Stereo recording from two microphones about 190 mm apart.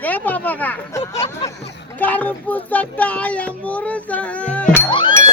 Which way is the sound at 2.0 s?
10° left (ahead or behind).